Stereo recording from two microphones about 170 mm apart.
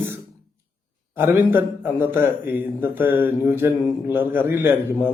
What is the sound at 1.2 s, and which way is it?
A man's voice, 10° right (ahead or behind).